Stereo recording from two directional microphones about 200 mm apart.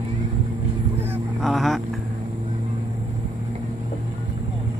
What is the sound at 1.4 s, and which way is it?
Vehicle, centre (ahead or behind).